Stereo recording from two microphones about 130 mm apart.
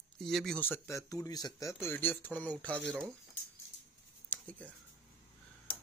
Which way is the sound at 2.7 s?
15° right (ahead or behind).